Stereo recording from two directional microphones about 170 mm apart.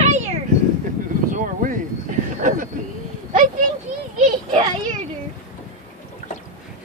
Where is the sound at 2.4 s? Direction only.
50° right (ahead or behind).